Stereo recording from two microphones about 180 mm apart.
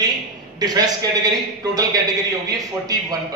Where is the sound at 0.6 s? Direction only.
20° right (ahead or behind).